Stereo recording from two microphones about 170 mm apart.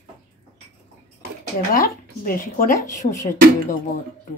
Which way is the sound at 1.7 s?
55° left (ahead or behind).